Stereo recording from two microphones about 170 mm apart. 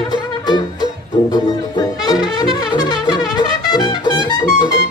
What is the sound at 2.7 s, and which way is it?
Brass instrument, 25° left (ahead or behind).